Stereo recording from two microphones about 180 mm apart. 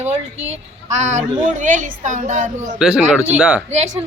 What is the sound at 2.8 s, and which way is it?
Speech, 5° right (ahead or behind).